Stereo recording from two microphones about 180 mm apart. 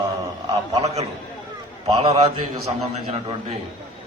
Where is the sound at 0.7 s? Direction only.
35° right (ahead or behind).